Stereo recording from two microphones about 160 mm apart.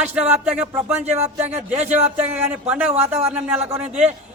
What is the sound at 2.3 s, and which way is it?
A man's voice, 10° right (ahead or behind).